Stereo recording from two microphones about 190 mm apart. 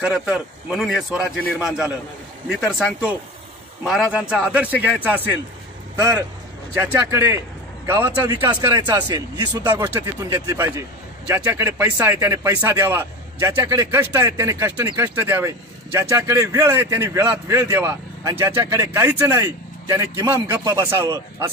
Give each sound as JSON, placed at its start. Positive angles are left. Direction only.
{"t": 0.0, "sound": "speech", "side_deg": -5}
{"t": 2.6, "sound": "a man's voice", "side_deg": -5}
{"t": 6.8, "sound": "a man's voice", "side_deg": -10}